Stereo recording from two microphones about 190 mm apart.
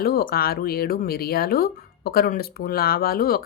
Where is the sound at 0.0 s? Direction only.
50° left (ahead or behind).